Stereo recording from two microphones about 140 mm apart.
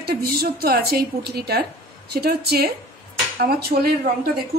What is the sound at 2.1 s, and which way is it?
Speech, 90° right.